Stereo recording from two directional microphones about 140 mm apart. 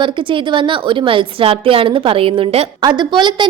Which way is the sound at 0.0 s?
35° right (ahead or behind).